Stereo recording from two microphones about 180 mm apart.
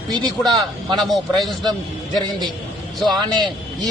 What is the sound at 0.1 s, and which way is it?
Speech, 25° right (ahead or behind).